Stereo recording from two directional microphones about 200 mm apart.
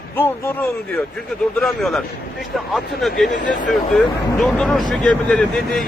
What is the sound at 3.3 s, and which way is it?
Speech, 40° left (ahead or behind).